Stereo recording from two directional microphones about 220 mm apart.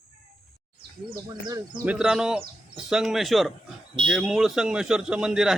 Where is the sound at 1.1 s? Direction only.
20° right (ahead or behind).